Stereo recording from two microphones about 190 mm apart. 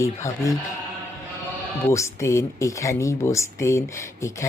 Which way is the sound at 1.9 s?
15° left (ahead or behind).